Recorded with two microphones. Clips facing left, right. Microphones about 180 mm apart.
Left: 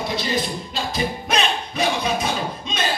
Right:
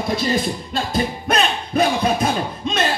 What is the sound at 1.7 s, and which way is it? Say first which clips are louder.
Crowd: right 7 dB; 55° right (ahead or behind).